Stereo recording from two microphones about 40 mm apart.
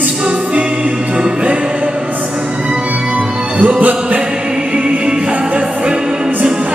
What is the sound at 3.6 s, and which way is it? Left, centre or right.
Music, right.